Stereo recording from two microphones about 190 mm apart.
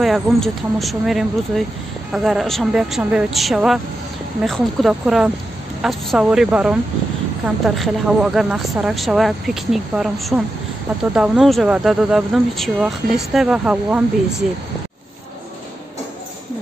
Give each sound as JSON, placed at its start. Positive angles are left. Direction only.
{"t": 0.0, "sound": "speech", "side_deg": 0}